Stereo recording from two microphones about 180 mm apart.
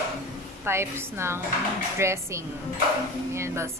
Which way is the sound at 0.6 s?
15° right (ahead or behind).